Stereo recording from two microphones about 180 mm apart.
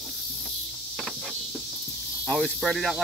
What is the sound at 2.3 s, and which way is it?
Speech, 5° left (ahead or behind).